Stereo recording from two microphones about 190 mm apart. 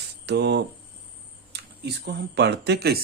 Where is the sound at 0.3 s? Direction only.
65° right (ahead or behind).